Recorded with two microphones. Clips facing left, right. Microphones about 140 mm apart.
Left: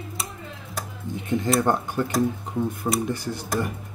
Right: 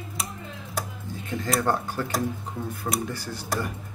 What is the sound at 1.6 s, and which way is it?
Speech, 20° left (ahead or behind).